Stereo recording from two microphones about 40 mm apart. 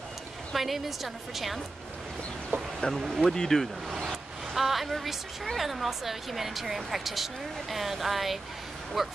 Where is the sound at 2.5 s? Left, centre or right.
Right.